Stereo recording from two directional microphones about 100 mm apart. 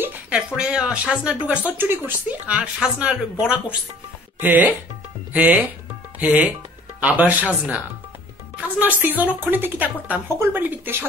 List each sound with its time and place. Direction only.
0.6 s speech: 10° right (ahead or behind)
8.5 s speech: 15° right (ahead or behind)